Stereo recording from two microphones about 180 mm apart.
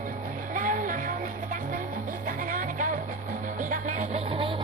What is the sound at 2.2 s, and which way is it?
Music, 50° right (ahead or behind).